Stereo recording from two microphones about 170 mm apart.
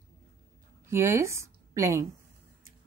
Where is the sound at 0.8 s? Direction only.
15° right (ahead or behind).